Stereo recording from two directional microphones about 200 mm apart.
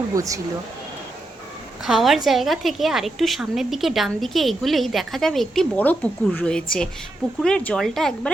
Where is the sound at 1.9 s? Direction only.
Centre (ahead or behind).